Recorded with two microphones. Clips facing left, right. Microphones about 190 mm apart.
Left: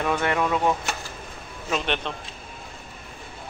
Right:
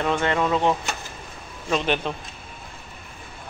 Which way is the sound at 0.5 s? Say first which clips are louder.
Right 3 dB; 25° right (ahead or behind).